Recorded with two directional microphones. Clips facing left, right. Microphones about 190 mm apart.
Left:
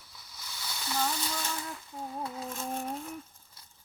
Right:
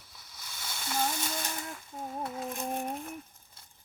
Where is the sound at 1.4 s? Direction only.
15° right (ahead or behind).